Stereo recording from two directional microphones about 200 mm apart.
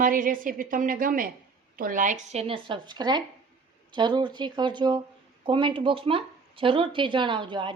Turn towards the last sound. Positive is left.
turn(degrees=-25)  # may be behind; listen again after turning